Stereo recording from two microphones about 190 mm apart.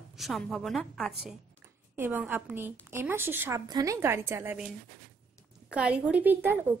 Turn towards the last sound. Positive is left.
turn(degrees=-10)  # may be behind; listen again after turning